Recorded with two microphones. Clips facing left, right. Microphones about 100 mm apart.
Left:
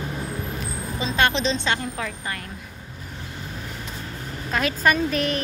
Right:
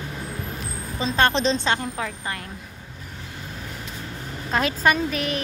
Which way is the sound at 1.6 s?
25° right (ahead or behind).